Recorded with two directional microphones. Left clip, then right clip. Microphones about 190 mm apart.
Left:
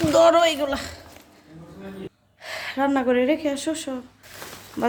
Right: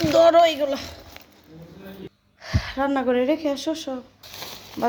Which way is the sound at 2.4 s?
Centre (ahead or behind).